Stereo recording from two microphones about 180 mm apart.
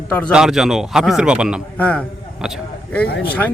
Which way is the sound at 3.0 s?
60° left (ahead or behind).